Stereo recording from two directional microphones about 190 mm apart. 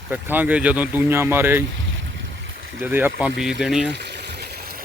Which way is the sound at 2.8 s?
10° right (ahead or behind).